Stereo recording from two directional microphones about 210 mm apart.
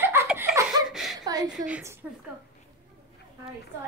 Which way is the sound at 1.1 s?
20° right (ahead or behind).